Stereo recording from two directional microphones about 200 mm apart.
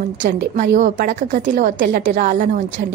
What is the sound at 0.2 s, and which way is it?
A woman's voice, 40° right (ahead or behind).